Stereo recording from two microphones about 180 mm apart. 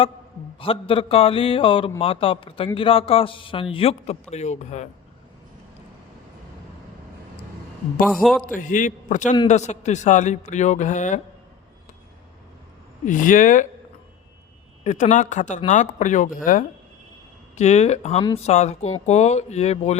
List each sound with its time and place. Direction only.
0.6 s a man's voice: 30° left (ahead or behind)
8.0 s a man's voice: centre (ahead or behind)
8.4 s a man's voice: 45° left (ahead or behind)
13.1 s speech: 45° left (ahead or behind)
14.8 s speech: 45° left (ahead or behind)
17.6 s a man's voice: 40° left (ahead or behind)